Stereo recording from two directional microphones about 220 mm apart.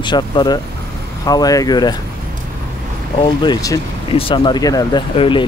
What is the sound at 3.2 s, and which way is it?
Speech, 20° left (ahead or behind).